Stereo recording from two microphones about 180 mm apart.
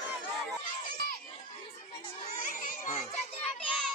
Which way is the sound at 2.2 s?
45° left (ahead or behind).